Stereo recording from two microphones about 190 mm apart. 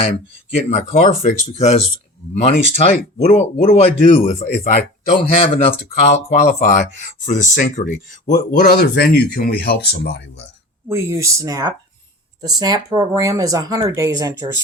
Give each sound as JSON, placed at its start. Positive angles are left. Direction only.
{"t": 0.5, "sound": "speech", "side_deg": 35}
{"t": 10.8, "sound": "speech", "side_deg": -15}